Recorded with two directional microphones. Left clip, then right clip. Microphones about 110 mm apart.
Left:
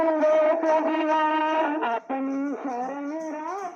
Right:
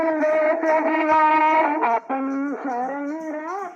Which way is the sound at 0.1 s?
25° right (ahead or behind).